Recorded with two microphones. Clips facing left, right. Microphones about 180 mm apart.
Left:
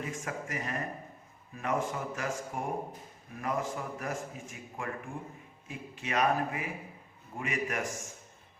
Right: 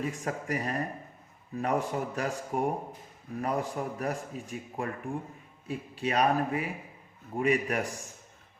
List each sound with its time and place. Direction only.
0.0 s a man's voice: 35° right (ahead or behind)